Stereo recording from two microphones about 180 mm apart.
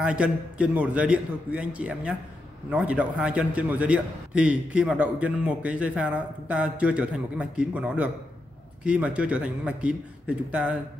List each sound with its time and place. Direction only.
0.0 s a man's voice: 5° right (ahead or behind)